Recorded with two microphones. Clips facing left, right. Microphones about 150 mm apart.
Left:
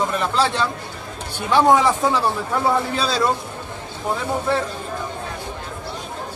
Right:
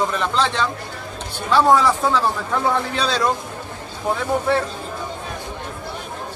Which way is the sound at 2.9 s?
5° left (ahead or behind).